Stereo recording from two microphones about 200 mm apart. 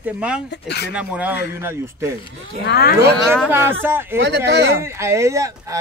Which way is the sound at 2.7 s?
50° left (ahead or behind).